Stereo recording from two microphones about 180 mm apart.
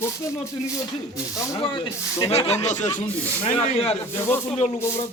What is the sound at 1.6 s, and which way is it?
Speech, 25° left (ahead or behind).